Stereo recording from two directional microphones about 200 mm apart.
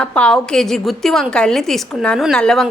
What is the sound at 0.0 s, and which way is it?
A woman's voice, 5° left (ahead or behind).